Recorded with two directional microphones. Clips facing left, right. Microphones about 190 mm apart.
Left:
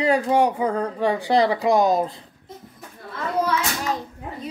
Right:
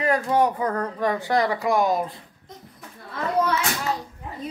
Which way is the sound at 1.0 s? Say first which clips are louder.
Left 4 dB; 30° left (ahead or behind).